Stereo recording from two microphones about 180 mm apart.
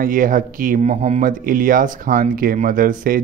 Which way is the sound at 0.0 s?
50° right (ahead or behind).